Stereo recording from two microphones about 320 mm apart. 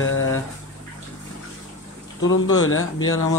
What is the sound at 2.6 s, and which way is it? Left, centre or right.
Speech, left.